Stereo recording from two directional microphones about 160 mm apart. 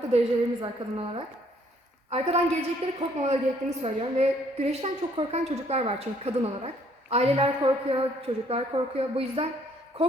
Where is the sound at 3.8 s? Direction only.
40° right (ahead or behind).